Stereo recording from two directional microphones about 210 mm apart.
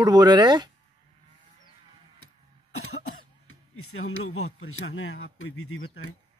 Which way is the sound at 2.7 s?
90° left.